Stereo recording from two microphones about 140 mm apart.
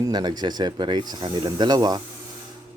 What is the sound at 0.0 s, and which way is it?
Speech, 30° right (ahead or behind).